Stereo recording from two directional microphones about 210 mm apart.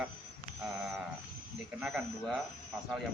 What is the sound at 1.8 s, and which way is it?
Speech, centre (ahead or behind).